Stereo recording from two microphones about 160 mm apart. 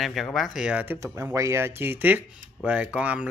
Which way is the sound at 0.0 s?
Centre (ahead or behind).